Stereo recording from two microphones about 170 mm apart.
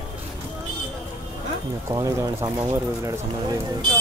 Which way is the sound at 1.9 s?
20° right (ahead or behind).